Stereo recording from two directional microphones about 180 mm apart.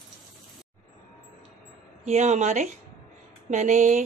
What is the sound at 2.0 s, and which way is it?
Speech, 40° right (ahead or behind).